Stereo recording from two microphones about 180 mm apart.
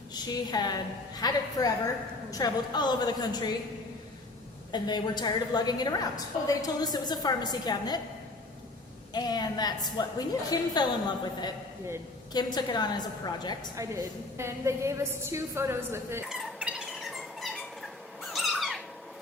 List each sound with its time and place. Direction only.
0.1 s a woman's voice: 25° left (ahead or behind)
4.7 s a woman's voice: 25° left (ahead or behind)
9.1 s a woman's voice: 20° left (ahead or behind)
12.3 s a woman's voice: 25° left (ahead or behind)
13.7 s a woman's voice: 15° right (ahead or behind)
16.3 s cat: 5° right (ahead or behind)